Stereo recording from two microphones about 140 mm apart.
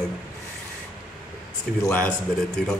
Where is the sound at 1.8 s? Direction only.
10° left (ahead or behind).